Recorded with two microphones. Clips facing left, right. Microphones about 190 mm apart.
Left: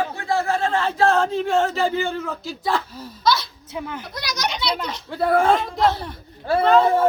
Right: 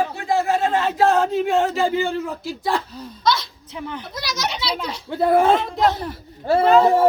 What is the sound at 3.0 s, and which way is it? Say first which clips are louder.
A child's voice: even; centre (ahead or behind).